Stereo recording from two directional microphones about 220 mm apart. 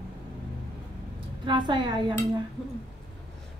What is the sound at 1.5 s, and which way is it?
Speech, 20° right (ahead or behind).